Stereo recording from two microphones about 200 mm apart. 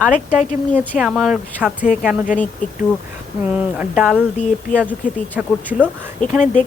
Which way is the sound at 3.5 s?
5° right (ahead or behind).